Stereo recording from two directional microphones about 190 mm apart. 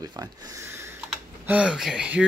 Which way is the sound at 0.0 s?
20° right (ahead or behind).